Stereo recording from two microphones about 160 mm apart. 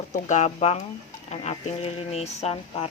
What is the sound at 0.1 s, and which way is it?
A woman's voice, 50° left (ahead or behind).